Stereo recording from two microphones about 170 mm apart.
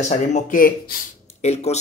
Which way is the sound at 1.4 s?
40° left (ahead or behind).